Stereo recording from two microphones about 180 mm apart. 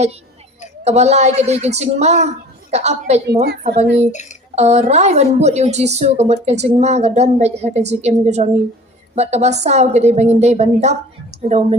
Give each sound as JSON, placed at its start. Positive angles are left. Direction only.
{"t": 0.9, "sound": "a woman's voice", "side_deg": -35}
{"t": 3.2, "sound": "a woman's voice", "side_deg": -65}
{"t": 4.1, "sound": "a sound", "side_deg": 40}
{"t": 4.5, "sound": "a woman's voice", "side_deg": -40}